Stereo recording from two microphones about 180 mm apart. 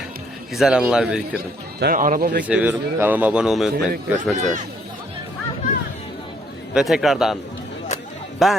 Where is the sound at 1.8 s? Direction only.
50° right (ahead or behind).